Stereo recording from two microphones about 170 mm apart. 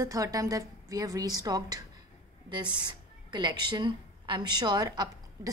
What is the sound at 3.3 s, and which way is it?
A woman's voice, 25° right (ahead or behind).